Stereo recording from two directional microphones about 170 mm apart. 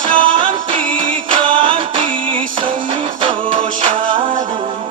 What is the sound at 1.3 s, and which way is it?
Music, 30° right (ahead or behind).